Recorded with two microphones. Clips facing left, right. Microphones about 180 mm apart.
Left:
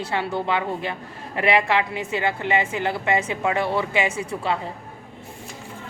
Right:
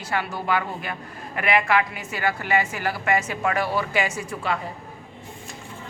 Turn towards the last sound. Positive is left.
turn(degrees=25)  # may be behind; listen again after turning